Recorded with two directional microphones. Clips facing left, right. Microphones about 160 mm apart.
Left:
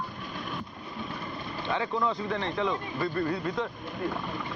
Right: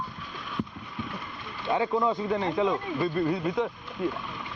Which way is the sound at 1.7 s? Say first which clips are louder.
Right 4 dB; 25° right (ahead or behind).